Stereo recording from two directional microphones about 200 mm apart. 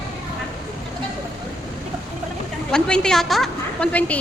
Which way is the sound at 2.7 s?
5° left (ahead or behind).